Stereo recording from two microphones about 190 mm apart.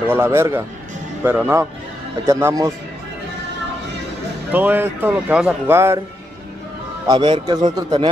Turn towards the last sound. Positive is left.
turn(degrees=-20)  # may be behind; listen again after turning